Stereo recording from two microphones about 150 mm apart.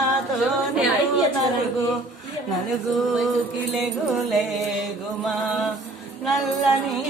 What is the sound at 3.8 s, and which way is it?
Female singing, centre (ahead or behind).